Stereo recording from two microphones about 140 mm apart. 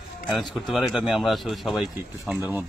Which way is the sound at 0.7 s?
Centre (ahead or behind).